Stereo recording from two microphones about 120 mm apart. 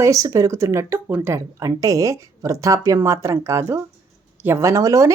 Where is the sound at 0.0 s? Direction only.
25° right (ahead or behind).